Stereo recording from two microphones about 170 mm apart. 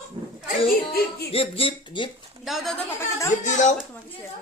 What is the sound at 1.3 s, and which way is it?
Speech, 35° left (ahead or behind).